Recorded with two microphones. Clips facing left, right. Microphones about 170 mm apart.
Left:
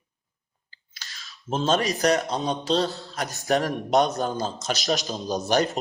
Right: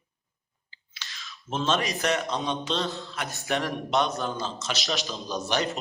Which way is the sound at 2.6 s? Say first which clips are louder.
Left 5 dB; 40° left (ahead or behind).